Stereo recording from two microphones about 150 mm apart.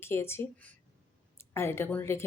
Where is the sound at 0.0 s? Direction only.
15° left (ahead or behind).